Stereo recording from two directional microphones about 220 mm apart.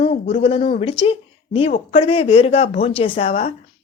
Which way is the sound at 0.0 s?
30° left (ahead or behind).